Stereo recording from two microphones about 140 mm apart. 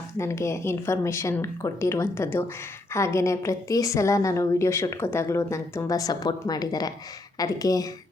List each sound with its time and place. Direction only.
0.2 s a woman's voice: 20° left (ahead or behind)